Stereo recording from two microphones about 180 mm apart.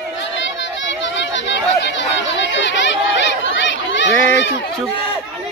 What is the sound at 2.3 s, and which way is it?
Chatter, 80° left.